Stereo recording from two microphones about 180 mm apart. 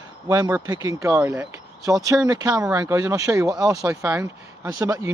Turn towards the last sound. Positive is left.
turn(degrees=-15)  # may be behind; listen again after turning